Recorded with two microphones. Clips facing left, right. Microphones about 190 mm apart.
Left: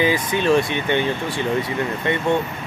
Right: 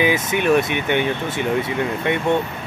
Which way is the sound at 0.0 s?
20° right (ahead or behind).